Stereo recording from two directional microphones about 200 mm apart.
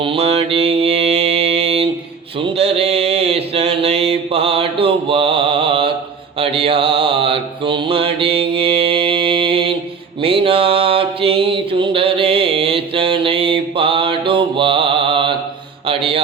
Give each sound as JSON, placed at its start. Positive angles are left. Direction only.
{"t": 0.0, "sound": "mantra", "side_deg": -30}